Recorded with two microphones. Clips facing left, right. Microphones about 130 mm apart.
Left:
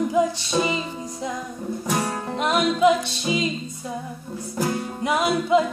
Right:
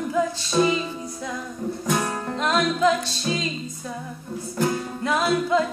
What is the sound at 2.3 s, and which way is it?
Music, 15° left (ahead or behind).